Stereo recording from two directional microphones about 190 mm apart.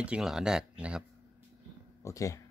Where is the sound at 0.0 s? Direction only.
5° right (ahead or behind).